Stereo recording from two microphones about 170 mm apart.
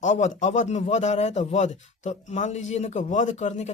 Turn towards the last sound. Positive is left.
turn(degrees=45)  # may be behind; listen again after turning